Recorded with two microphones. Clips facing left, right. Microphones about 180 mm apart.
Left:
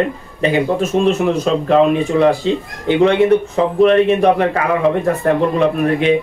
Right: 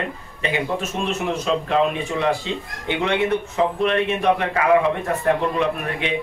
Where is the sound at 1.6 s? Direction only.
40° left (ahead or behind).